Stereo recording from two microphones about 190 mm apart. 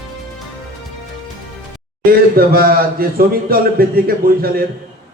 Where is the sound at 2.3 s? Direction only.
50° right (ahead or behind).